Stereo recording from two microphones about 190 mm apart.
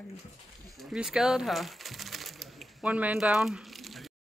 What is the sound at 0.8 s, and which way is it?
Speech, 5° right (ahead or behind).